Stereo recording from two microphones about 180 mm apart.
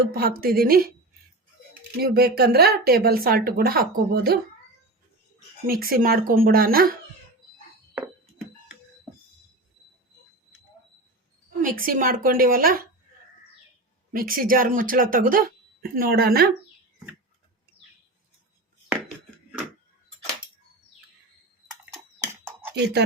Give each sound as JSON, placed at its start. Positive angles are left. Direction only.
{"t": 0.1, "sound": "speech", "side_deg": -55}
{"t": 2.0, "sound": "speech", "side_deg": -60}
{"t": 5.6, "sound": "speech", "side_deg": -55}
{"t": 11.6, "sound": "speech", "side_deg": -50}
{"t": 14.1, "sound": "speech", "side_deg": -50}
{"t": 21.8, "sound": "a sound", "side_deg": -15}
{"t": 22.7, "sound": "speech", "side_deg": -65}